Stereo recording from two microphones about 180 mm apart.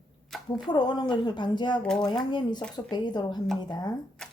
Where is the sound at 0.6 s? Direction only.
25° left (ahead or behind).